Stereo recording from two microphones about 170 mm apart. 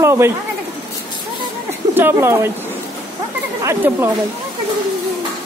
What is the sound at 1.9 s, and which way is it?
Speech, 10° right (ahead or behind).